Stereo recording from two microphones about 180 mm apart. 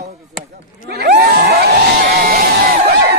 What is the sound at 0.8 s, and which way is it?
Speech, 65° right (ahead or behind).